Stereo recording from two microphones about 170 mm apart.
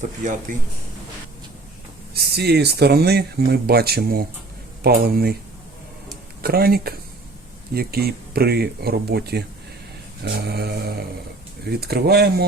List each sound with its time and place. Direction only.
0.2 s speech: 45° right (ahead or behind)
2.3 s speech: 70° right (ahead or behind)
6.4 s speech: 65° right (ahead or behind)